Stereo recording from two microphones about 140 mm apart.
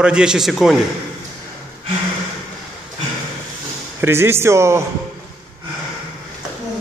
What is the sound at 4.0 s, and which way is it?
Speech, 15° right (ahead or behind).